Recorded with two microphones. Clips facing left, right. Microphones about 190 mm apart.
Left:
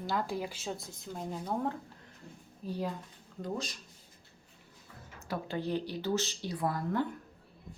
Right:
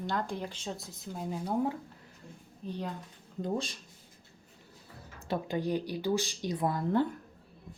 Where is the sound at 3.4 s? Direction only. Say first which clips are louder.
Right 4 dB; 30° right (ahead or behind).